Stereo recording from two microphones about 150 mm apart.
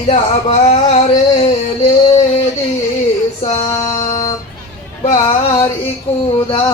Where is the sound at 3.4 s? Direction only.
45° left (ahead or behind).